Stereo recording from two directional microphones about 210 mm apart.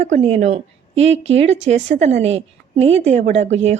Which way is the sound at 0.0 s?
30° right (ahead or behind).